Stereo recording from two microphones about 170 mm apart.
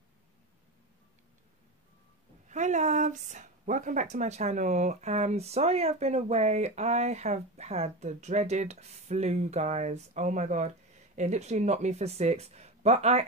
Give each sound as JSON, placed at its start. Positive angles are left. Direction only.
{"t": 2.4, "sound": "speech", "side_deg": -45}